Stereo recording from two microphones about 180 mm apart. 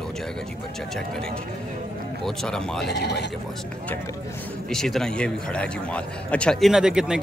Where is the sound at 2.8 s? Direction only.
70° left (ahead or behind).